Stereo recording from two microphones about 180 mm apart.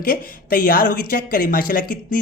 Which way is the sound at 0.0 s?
55° left (ahead or behind).